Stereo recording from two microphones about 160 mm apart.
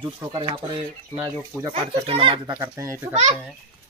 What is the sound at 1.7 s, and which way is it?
Speech, 40° right (ahead or behind).